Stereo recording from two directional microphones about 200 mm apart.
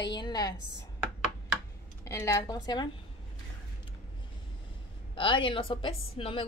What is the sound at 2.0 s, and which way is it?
Speech, 15° left (ahead or behind).